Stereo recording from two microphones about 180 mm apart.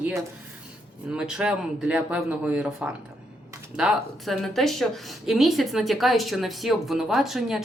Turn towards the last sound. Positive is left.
turn(degrees=0)  # may be behind; listen again after turning